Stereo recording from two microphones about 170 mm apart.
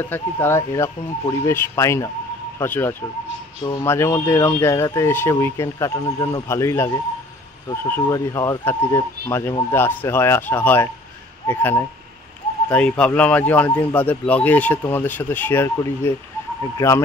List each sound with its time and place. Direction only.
0.0 s speech: 10° left (ahead or behind)